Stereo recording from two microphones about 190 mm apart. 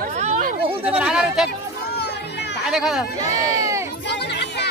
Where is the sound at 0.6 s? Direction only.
10° right (ahead or behind).